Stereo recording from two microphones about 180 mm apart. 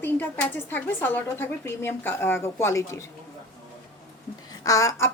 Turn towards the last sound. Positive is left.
turn(degrees=20)  # may be behind; listen again after turning